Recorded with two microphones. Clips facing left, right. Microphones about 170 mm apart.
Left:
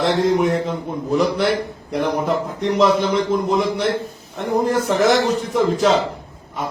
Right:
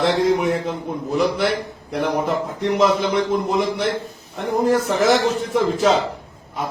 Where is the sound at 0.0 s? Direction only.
Centre (ahead or behind).